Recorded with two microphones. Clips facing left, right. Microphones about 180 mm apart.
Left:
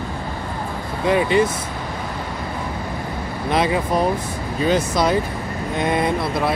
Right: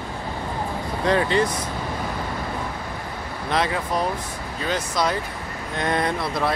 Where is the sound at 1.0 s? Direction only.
10° left (ahead or behind).